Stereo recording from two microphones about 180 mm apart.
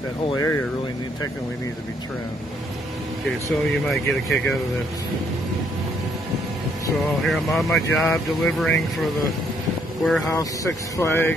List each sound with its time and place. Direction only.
0.4 s speech: 15° left (ahead or behind)
3.8 s speech: centre (ahead or behind)
7.2 s speech: centre (ahead or behind)
10.0 s speech: centre (ahead or behind)
10.3 s speech: 15° left (ahead or behind)